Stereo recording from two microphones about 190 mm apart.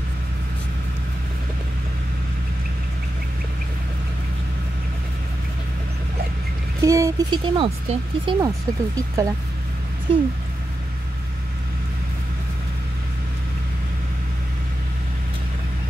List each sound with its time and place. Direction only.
6.8 s speech: 15° right (ahead or behind)
8.9 s speech: 15° right (ahead or behind)
10.1 s speech: 30° right (ahead or behind)